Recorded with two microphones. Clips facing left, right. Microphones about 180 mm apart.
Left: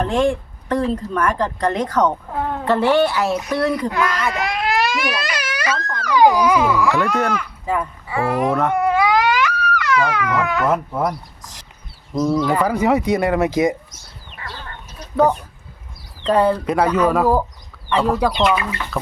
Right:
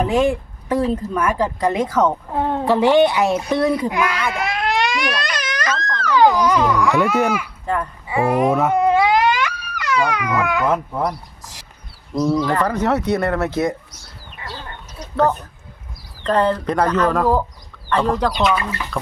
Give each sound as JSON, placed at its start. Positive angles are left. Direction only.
{"t": 0.0, "sound": "speech", "side_deg": -5}
{"t": 2.3, "sound": "a sound", "side_deg": -25}
{"t": 2.6, "sound": "speech", "side_deg": -15}
{"t": 3.8, "sound": "speech", "side_deg": -10}
{"t": 4.2, "sound": "baby cry", "side_deg": 0}
{"t": 7.2, "sound": "speech", "side_deg": -10}
{"t": 7.6, "sound": "a child's voice", "side_deg": 5}
{"t": 8.0, "sound": "speech", "side_deg": -20}
{"t": 8.7, "sound": "cat", "side_deg": -25}
{"t": 10.0, "sound": "speech", "side_deg": -15}
{"t": 10.7, "sound": "speech", "side_deg": 5}
{"t": 12.1, "sound": "speech", "side_deg": 0}
{"t": 15.1, "sound": "speech", "side_deg": 10}